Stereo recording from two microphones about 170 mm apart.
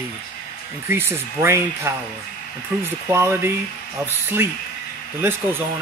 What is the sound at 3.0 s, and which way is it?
A man's voice, 15° right (ahead or behind).